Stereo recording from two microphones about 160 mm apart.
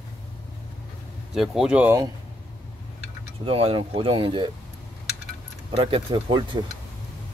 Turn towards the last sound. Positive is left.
turn(degrees=-30)  # may be behind; listen again after turning